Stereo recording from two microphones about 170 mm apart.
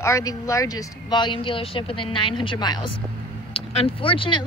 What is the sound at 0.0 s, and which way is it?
Speech, 20° left (ahead or behind).